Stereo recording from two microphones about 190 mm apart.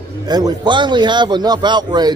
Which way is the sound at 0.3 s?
20° right (ahead or behind).